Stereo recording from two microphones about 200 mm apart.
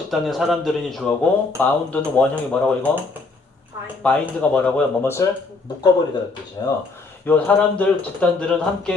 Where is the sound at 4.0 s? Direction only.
5° left (ahead or behind).